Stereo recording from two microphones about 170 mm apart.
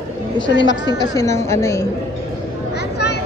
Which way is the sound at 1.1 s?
20° left (ahead or behind).